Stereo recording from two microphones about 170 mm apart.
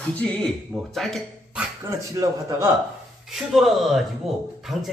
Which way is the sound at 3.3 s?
Centre (ahead or behind).